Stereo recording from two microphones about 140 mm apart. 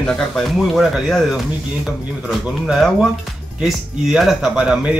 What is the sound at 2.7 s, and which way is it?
Speech, centre (ahead or behind).